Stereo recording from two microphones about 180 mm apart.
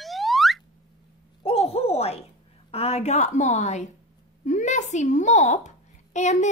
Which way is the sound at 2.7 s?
35° left (ahead or behind).